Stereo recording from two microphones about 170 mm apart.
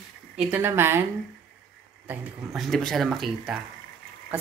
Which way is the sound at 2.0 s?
Centre (ahead or behind).